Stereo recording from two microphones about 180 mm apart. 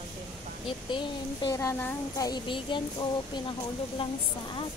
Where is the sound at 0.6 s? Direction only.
25° left (ahead or behind).